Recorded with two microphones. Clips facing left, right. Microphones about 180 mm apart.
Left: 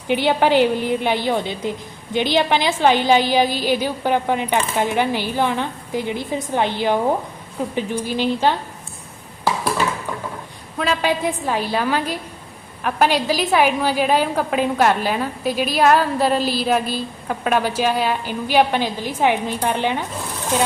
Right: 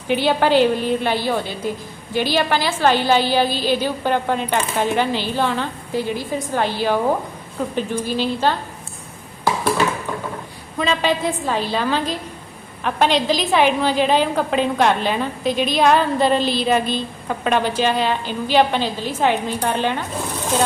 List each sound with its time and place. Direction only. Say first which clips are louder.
0.1 s a woman's voice: even; 15° left (ahead or behind)
10.8 s a woman's voice: right 1 dB; 5° left (ahead or behind)